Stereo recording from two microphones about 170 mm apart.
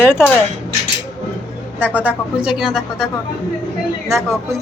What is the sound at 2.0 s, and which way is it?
Speech, 5° right (ahead or behind).